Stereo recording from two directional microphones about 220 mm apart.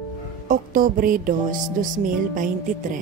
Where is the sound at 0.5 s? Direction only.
40° right (ahead or behind).